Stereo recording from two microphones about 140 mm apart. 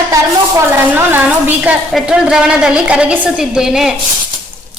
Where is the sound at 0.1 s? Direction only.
20° right (ahead or behind).